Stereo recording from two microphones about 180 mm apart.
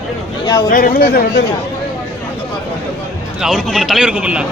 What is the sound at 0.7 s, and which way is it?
Speech, 55° left (ahead or behind).